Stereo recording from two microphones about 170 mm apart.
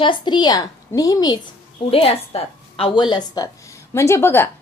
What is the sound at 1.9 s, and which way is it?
A woman's voice, 35° left (ahead or behind).